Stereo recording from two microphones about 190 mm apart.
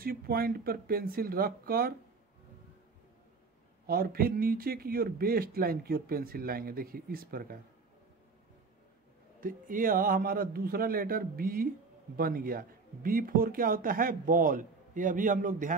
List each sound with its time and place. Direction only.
0.0 s speech: 50° right (ahead or behind)
3.8 s speech: 50° right (ahead or behind)
9.4 s speech: 45° right (ahead or behind)